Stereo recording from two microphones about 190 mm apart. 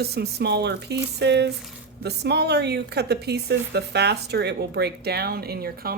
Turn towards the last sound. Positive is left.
turn(degrees=-55)  # may be behind; listen again after turning